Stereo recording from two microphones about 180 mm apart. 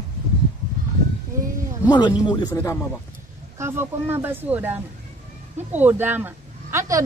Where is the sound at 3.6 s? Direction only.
15° right (ahead or behind).